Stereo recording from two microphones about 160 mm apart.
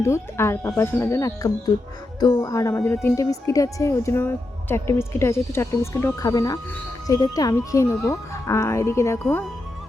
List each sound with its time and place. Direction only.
0.0 s a woman's voice: 15° left (ahead or behind)